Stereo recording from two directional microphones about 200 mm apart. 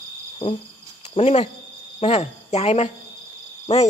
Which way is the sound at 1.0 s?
35° left (ahead or behind).